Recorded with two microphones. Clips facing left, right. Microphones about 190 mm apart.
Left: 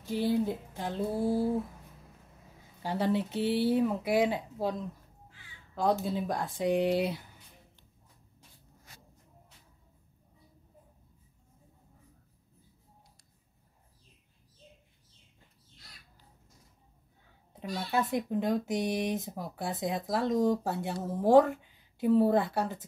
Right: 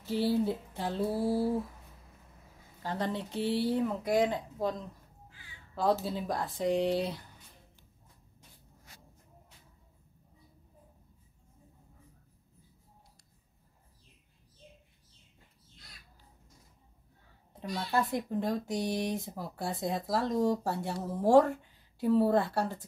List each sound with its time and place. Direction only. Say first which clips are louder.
0.0 s a woman's voice: even; 15° left (ahead or behind)
0.5 s speech: right 1 dB; centre (ahead or behind)
2.8 s speech: left 5 dB; 10° left (ahead or behind)
5.8 s speech: left 1 dB; centre (ahead or behind)
17.9 s speech: left 1 dB; centre (ahead or behind)